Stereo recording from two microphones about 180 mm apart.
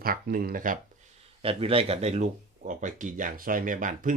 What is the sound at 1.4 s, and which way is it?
Speech, 30° right (ahead or behind).